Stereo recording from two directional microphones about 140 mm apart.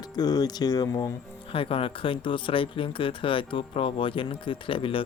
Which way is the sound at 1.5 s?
40° left (ahead or behind).